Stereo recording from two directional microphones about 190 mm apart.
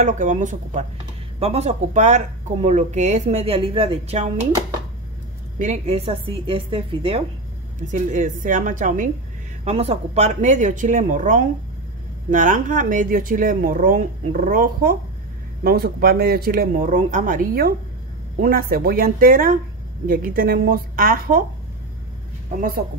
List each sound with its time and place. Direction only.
0.0 s speech: 40° right (ahead or behind)
5.6 s a woman's voice: 35° right (ahead or behind)
7.9 s speech: 40° right (ahead or behind)
9.7 s speech: 35° right (ahead or behind); by 21.5 s 50° right (ahead or behind)